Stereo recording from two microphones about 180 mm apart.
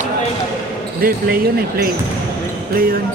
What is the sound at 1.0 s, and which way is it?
Speech, 55° right (ahead or behind).